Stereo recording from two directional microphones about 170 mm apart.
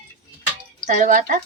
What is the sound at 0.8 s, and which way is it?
Speech, 50° right (ahead or behind).